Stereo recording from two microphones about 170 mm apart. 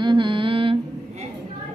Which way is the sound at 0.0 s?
30° right (ahead or behind).